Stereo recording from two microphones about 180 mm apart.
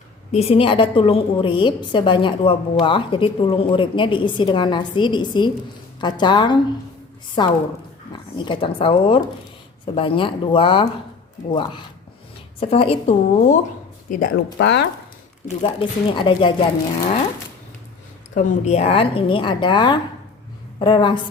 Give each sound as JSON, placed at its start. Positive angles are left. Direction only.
{"t": 0.3, "sound": "a woman's voice", "side_deg": 35}
{"t": 14.6, "sound": "speech", "side_deg": 75}
{"t": 16.1, "sound": "a woman's voice", "side_deg": 25}
{"t": 18.3, "sound": "a woman's voice", "side_deg": 35}